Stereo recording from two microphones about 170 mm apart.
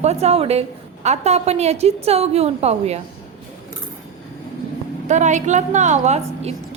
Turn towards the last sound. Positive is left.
turn(degrees=-40)  # may be behind; listen again after turning